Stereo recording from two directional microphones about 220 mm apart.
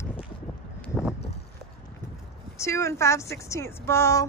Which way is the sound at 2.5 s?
15° left (ahead or behind).